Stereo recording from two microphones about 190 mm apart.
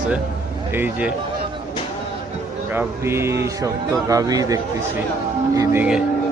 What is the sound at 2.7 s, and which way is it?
Speech, 15° right (ahead or behind).